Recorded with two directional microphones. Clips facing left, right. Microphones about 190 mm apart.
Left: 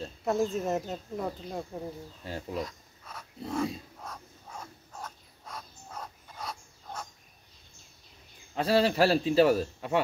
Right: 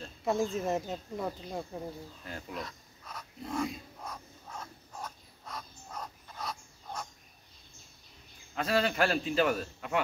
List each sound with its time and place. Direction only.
0.2 s speech: centre (ahead or behind)
2.2 s speech: 30° left (ahead or behind)
2.6 s a sound: 5° left (ahead or behind)
4.5 s dog: 10° left (ahead or behind)
8.5 s a man's voice: 30° left (ahead or behind)